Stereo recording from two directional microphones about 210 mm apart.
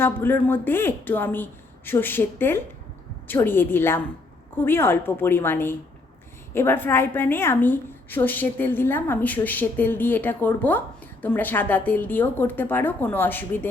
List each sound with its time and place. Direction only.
0.0 s a woman's voice: 10° left (ahead or behind)